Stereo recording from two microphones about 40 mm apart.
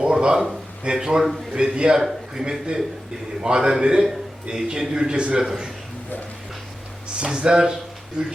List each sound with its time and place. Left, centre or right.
0.1 s a sound: centre
0.9 s a man's voice: centre
2.0 s a man's voice: centre
2.4 s a man's voice: centre
7.2 s a man's voice: right